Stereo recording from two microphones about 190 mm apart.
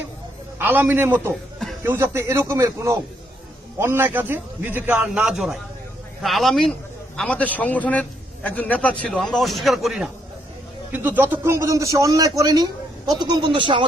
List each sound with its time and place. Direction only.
0.6 s a man's voice: 10° right (ahead or behind)